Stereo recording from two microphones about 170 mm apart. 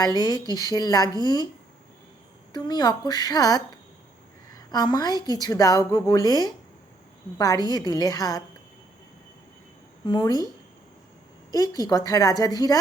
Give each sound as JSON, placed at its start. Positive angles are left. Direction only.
{"t": 0.0, "sound": "speech", "side_deg": 25}
{"t": 2.5, "sound": "speech", "side_deg": 25}
{"t": 4.7, "sound": "speech", "side_deg": 25}
{"t": 10.1, "sound": "speech", "side_deg": 25}
{"t": 11.5, "sound": "speech", "side_deg": 20}